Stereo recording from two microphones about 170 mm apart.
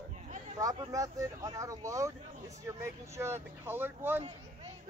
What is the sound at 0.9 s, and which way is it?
Speech, 20° right (ahead or behind).